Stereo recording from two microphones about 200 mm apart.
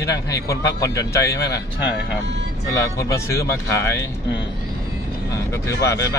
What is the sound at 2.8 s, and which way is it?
A man's voice, 15° left (ahead or behind).